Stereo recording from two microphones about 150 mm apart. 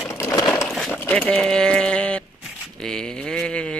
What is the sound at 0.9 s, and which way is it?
Speech, 10° left (ahead or behind).